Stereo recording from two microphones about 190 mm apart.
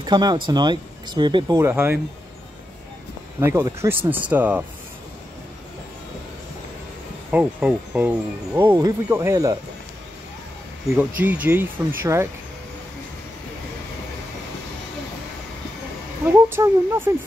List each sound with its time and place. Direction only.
0.0 s speech: 20° right (ahead or behind)
1.6 s speech: 10° right (ahead or behind)
3.3 s speech: 15° right (ahead or behind)
7.2 s speech: 10° right (ahead or behind)
8.5 s speech: 20° right (ahead or behind)
11.0 s speech: 10° right (ahead or behind)
16.3 s speech: 10° right (ahead or behind)